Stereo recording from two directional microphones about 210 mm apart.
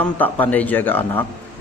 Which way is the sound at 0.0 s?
5° left (ahead or behind).